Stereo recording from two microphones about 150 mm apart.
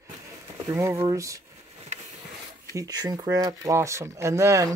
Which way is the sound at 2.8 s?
25° right (ahead or behind).